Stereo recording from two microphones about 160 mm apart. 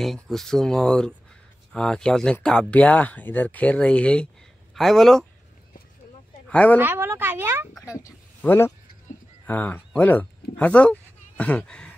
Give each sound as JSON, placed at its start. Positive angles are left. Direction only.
{"t": 0.0, "sound": "speech", "side_deg": 0}
{"t": 6.4, "sound": "a woman's voice", "side_deg": 10}
{"t": 6.8, "sound": "speech", "side_deg": -10}
{"t": 7.8, "sound": "a man's voice", "side_deg": 20}